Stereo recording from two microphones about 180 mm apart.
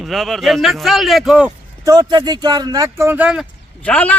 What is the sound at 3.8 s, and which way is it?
Speech, 10° left (ahead or behind).